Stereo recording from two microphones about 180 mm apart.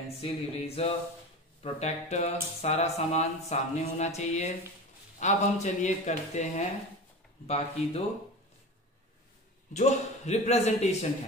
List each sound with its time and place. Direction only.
0.2 s speech: 35° left (ahead or behind)
9.8 s speech: 40° left (ahead or behind)